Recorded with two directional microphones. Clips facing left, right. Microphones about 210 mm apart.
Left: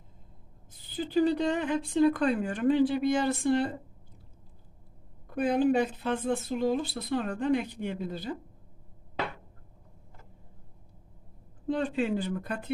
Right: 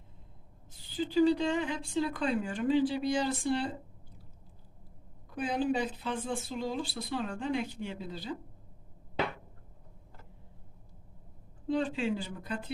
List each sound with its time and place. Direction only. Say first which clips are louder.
0.9 s a woman's voice: even; 55° left (ahead or behind)
5.3 s a woman's voice: left 6 dB; 55° left (ahead or behind)
11.7 s a woman's voice: left 2 dB; 55° left (ahead or behind)